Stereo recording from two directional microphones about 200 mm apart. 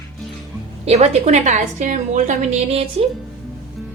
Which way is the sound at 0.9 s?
35° right (ahead or behind).